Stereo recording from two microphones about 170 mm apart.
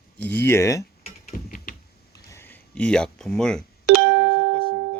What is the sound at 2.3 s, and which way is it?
Speech, 10° left (ahead or behind).